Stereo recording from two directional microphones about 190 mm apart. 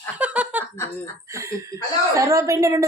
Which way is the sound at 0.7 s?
15° left (ahead or behind).